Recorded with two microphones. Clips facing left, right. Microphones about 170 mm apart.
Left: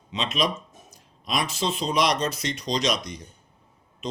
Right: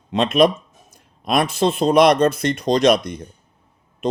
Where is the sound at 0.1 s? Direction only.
55° right (ahead or behind).